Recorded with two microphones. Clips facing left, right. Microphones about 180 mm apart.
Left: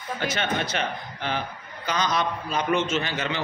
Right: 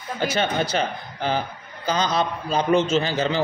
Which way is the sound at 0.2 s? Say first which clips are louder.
Right 5 dB; 35° right (ahead or behind).